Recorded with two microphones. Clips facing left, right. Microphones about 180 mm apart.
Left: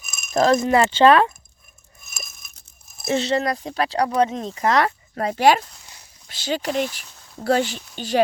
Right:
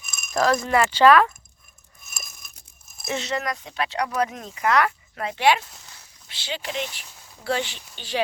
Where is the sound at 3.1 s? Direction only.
30° left (ahead or behind).